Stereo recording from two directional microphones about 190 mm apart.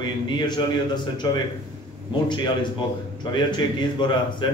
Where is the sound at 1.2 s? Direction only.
20° left (ahead or behind).